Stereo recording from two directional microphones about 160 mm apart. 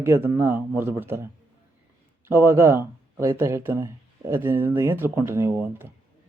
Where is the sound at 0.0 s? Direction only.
15° right (ahead or behind).